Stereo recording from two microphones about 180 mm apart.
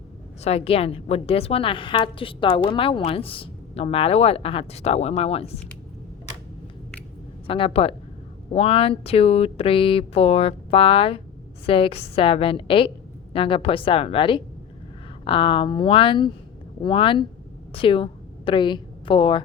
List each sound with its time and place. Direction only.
0.4 s a woman's voice: 35° left (ahead or behind)
7.4 s a woman's voice: 30° left (ahead or behind)